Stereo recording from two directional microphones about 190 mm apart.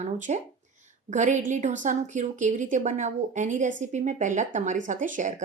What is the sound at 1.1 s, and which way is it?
Speech, 40° right (ahead or behind).